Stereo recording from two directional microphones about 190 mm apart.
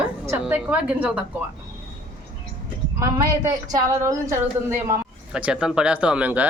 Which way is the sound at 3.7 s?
15° right (ahead or behind).